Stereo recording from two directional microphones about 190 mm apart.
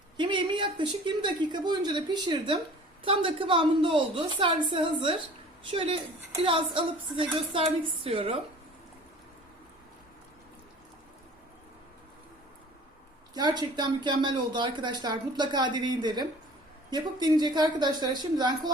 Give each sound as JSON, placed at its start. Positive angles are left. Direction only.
{"t": 0.2, "sound": "speech", "side_deg": -25}
{"t": 13.3, "sound": "speech", "side_deg": -20}